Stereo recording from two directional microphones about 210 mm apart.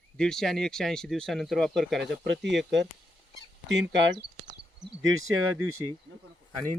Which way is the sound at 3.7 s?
55° right (ahead or behind).